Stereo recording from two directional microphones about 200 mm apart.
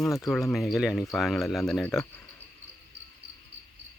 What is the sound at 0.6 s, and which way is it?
Speech, centre (ahead or behind).